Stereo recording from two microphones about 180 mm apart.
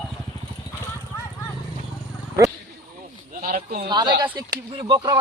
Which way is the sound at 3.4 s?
55° right (ahead or behind).